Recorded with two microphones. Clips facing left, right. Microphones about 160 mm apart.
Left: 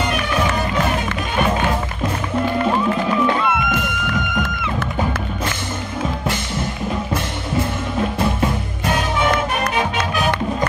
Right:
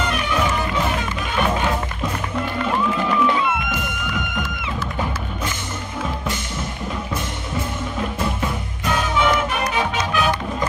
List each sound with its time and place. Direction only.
3.3 s music: 55° left (ahead or behind)